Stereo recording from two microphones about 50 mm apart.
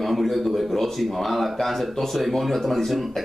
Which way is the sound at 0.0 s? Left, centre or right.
Centre.